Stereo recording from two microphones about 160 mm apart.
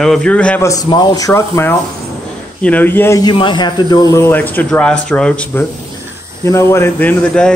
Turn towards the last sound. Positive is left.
turn(degrees=10)  # may be behind; listen again after turning